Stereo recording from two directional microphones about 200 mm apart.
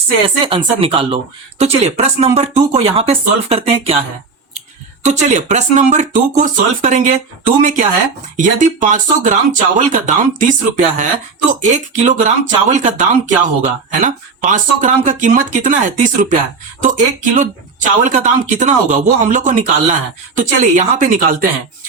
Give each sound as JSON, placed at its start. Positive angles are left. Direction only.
{"t": 0.4, "sound": "speech", "side_deg": -25}
{"t": 5.0, "sound": "speech", "side_deg": -35}